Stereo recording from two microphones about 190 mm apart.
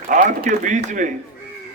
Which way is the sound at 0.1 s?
40° right (ahead or behind).